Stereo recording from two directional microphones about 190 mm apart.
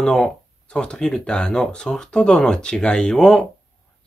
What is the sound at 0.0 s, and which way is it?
Speech, 5° left (ahead or behind).